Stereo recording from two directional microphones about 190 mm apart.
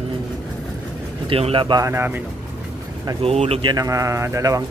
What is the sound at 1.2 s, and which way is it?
Speech, 30° right (ahead or behind).